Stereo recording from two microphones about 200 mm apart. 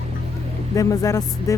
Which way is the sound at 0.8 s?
15° left (ahead or behind).